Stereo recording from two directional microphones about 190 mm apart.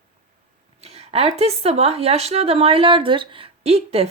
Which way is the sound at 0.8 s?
30° right (ahead or behind).